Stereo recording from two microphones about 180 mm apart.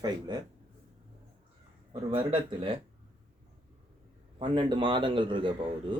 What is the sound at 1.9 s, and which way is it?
Speech, 30° right (ahead or behind).